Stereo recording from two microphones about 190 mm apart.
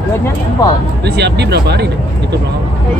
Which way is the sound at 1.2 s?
60° right (ahead or behind).